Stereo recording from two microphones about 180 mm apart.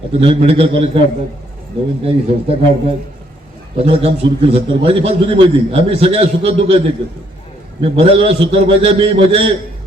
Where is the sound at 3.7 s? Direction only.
35° right (ahead or behind).